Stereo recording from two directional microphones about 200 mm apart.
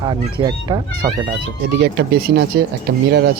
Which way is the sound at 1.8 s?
55° right (ahead or behind).